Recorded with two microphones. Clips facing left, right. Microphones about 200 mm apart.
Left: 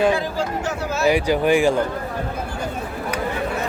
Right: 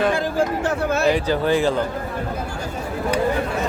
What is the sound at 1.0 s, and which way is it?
Speech, 10° left (ahead or behind).